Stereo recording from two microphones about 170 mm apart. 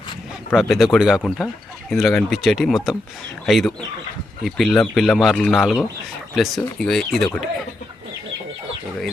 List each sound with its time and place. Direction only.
0.7 s speech: centre (ahead or behind)